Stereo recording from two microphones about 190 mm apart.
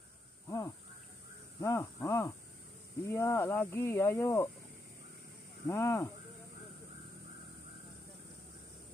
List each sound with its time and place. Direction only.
0.5 s a sound: 15° left (ahead or behind)
1.6 s speech: 15° left (ahead or behind)
5.7 s speech: 15° left (ahead or behind)